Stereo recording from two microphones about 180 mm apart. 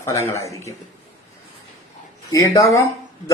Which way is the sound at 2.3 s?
20° left (ahead or behind).